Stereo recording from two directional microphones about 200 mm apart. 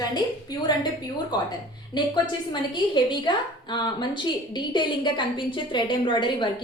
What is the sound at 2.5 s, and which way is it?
A woman's voice, 20° left (ahead or behind).